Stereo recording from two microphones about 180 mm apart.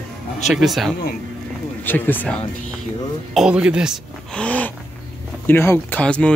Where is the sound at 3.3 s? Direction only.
5° right (ahead or behind).